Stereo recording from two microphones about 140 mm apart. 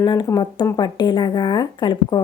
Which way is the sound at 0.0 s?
30° left (ahead or behind).